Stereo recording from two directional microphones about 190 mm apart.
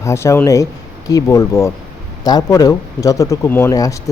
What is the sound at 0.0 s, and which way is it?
Speech, 15° left (ahead or behind).